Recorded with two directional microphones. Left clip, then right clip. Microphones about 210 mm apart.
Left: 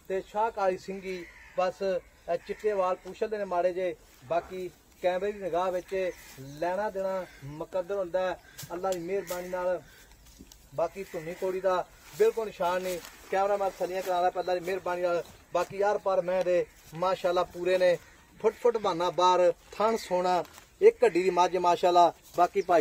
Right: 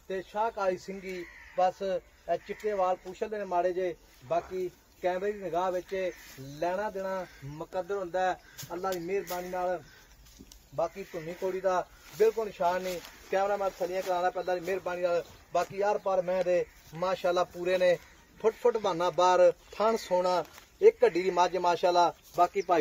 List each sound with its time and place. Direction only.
0.1 s speech: 10° left (ahead or behind)
11.4 s speech: 5° left (ahead or behind)
12.2 s a man's voice: 20° left (ahead or behind); by 22.8 s 40° left (ahead or behind)